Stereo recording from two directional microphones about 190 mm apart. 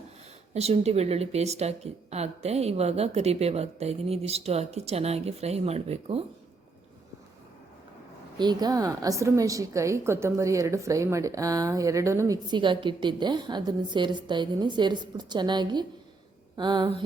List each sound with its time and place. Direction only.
0.5 s speech: 35° right (ahead or behind)
8.4 s a woman's voice: 20° right (ahead or behind)